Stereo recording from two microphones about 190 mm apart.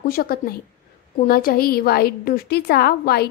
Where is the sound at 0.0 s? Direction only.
50° left (ahead or behind).